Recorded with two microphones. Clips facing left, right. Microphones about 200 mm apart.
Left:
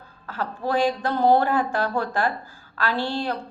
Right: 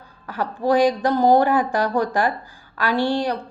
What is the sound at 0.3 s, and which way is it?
A woman's voice, 15° right (ahead or behind).